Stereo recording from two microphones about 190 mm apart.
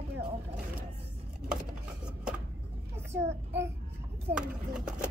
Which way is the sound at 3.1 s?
15° right (ahead or behind).